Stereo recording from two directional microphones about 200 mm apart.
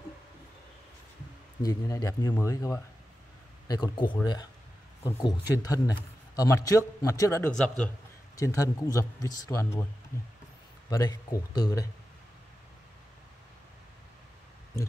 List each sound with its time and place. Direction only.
1.6 s a man's voice: 20° left (ahead or behind)
8.4 s a man's voice: 15° left (ahead or behind)
10.9 s a man's voice: 20° left (ahead or behind)